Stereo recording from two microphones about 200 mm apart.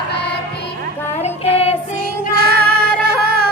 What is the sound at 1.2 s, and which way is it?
Child singing, 30° left (ahead or behind).